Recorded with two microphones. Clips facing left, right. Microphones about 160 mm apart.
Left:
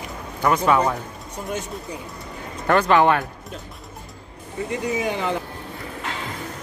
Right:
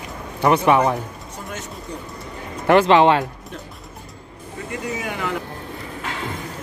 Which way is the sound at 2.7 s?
25° right (ahead or behind).